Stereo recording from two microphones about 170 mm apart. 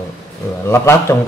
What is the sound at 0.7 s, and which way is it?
Mantra, 15° left (ahead or behind).